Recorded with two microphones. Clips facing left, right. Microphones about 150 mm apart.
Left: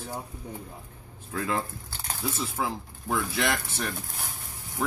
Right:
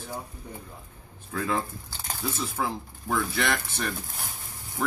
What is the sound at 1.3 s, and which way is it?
Speech, centre (ahead or behind).